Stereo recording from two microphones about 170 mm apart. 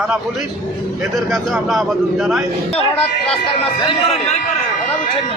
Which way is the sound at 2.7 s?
35° left (ahead or behind).